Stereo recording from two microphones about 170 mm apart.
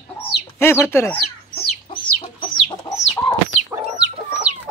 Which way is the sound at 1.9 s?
30° left (ahead or behind).